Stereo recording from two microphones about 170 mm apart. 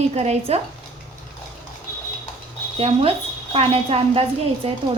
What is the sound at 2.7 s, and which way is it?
A woman's voice, 35° right (ahead or behind).